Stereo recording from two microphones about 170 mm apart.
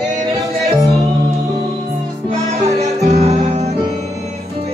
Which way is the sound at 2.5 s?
40° right (ahead or behind).